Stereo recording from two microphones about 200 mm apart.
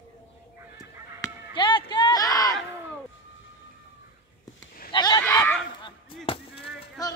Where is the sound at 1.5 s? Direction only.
25° left (ahead or behind).